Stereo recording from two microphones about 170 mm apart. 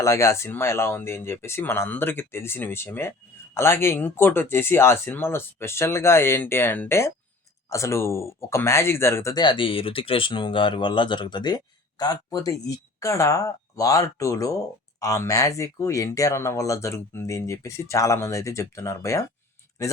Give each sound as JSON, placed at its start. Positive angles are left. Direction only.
{"t": 0.0, "sound": "speech", "side_deg": 15}